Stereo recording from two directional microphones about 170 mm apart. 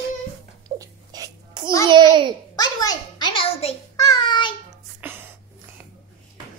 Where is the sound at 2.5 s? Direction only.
25° left (ahead or behind).